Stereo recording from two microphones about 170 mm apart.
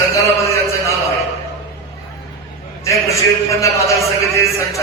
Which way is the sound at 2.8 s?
15° left (ahead or behind).